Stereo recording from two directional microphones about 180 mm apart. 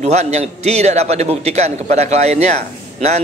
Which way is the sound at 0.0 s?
40° right (ahead or behind).